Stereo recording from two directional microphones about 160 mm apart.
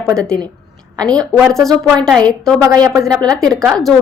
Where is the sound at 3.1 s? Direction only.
25° right (ahead or behind).